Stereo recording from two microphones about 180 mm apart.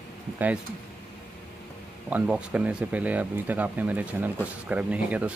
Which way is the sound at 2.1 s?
10° right (ahead or behind).